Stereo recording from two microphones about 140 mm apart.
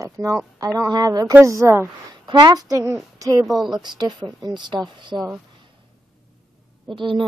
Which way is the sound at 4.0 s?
35° right (ahead or behind).